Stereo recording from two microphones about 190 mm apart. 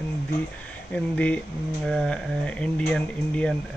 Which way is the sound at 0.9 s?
5° left (ahead or behind).